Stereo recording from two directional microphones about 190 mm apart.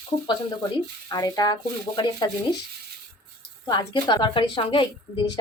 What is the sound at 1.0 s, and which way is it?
A woman's voice, 20° left (ahead or behind).